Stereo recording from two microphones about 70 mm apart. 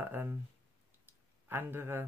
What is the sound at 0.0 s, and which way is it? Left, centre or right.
Speech, right.